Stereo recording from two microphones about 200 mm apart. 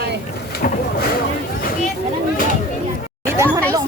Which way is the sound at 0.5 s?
50° left (ahead or behind).